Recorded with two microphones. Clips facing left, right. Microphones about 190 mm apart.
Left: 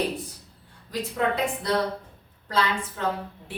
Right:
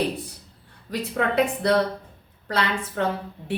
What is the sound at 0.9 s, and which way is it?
A woman's voice, 65° right (ahead or behind).